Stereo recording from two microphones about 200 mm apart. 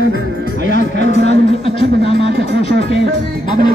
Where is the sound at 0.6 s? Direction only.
60° right (ahead or behind).